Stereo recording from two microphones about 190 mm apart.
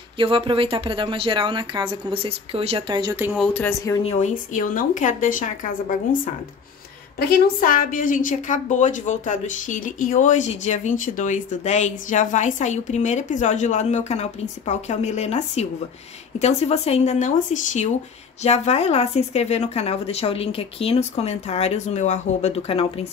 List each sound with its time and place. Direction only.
0.2 s speech: 30° right (ahead or behind)
3.3 s speech: 10° left (ahead or behind)
4.0 s speech: 35° left (ahead or behind)
7.2 s a woman's voice: 45° left (ahead or behind); by 22.8 s 30° left (ahead or behind)